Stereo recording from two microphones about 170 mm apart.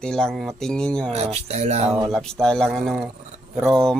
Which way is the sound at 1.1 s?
40° right (ahead or behind).